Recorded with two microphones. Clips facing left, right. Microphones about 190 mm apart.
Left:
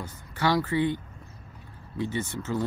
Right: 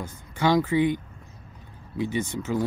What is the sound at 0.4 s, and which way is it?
Speech, 15° right (ahead or behind).